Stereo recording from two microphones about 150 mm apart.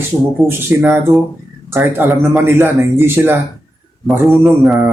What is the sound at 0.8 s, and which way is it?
Mantra, centre (ahead or behind).